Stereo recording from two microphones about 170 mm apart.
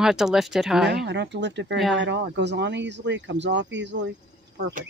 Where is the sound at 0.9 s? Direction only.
85° right.